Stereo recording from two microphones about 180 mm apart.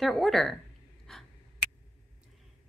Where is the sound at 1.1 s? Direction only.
5° left (ahead or behind).